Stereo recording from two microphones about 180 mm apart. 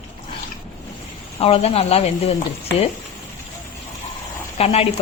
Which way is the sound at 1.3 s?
35° left (ahead or behind).